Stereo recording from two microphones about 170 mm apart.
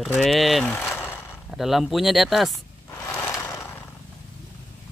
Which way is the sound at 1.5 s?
Centre (ahead or behind).